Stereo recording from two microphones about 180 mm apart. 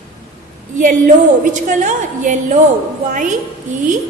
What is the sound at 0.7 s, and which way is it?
A woman's voice, 45° right (ahead or behind).